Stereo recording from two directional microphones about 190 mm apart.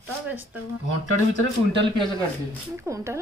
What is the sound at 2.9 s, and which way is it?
Speech, 15° right (ahead or behind).